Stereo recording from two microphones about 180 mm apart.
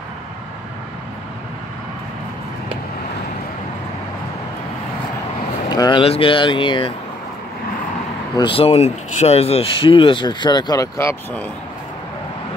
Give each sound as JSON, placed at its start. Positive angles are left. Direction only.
{"t": 5.7, "sound": "speech", "side_deg": 25}
{"t": 8.4, "sound": "speech", "side_deg": 30}